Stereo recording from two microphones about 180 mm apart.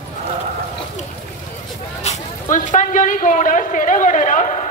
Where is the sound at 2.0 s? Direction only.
40° left (ahead or behind).